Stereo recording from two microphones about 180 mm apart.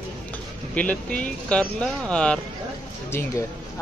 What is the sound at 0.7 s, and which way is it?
Speech, 5° left (ahead or behind).